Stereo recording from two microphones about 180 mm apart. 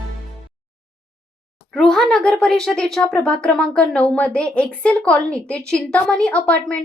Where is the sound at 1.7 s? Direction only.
Centre (ahead or behind).